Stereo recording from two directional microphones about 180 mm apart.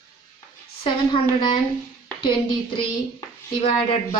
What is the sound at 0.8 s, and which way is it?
A woman's voice, 25° left (ahead or behind).